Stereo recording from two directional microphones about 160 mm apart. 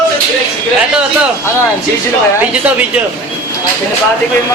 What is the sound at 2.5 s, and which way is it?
Speech, 10° right (ahead or behind).